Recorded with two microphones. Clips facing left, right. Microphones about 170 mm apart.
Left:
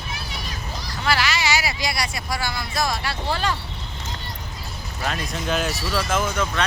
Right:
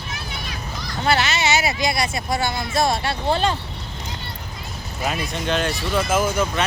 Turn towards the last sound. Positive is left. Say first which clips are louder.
# right 3 dB
turn(degrees=-5)  # may be behind; listen again after turning